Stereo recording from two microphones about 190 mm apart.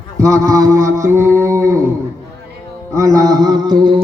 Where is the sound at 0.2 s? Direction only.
15° right (ahead or behind).